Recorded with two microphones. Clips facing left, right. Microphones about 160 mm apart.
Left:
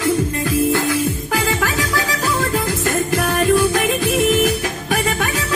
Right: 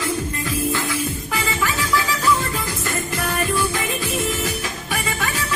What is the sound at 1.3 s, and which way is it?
Music, 60° left (ahead or behind).